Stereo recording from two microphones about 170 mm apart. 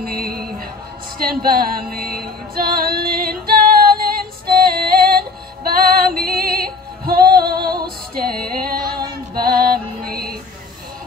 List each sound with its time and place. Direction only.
0.0 s a sound: 60° right (ahead or behind)
1.2 s female singing: 60° right (ahead or behind)
8.8 s female singing: 25° right (ahead or behind)
9.4 s music: 60° right (ahead or behind)